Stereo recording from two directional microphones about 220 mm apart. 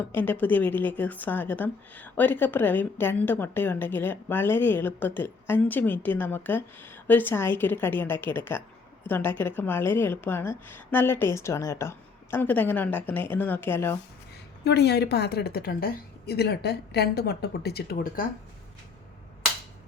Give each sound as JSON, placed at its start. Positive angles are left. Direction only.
{"t": 0.2, "sound": "a woman's voice", "side_deg": 10}
{"t": 14.6, "sound": "a woman's voice", "side_deg": 50}